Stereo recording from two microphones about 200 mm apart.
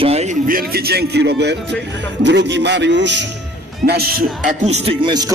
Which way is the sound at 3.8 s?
50° right (ahead or behind).